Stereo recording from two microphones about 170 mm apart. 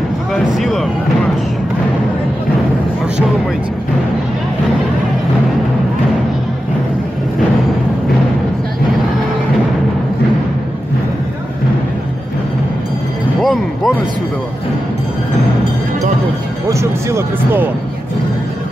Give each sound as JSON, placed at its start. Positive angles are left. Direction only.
{"t": 0.3, "sound": "speech", "side_deg": 0}
{"t": 13.4, "sound": "a sound", "side_deg": 0}
{"t": 16.6, "sound": "speech", "side_deg": -15}